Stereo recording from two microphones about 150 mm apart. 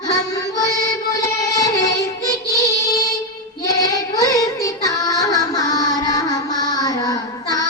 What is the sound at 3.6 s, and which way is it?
Child singing, 25° left (ahead or behind).